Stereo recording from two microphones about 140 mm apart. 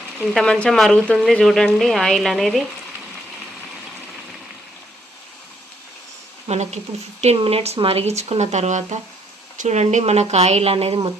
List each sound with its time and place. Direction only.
0.2 s speech: centre (ahead or behind)
6.5 s speech: 55° right (ahead or behind)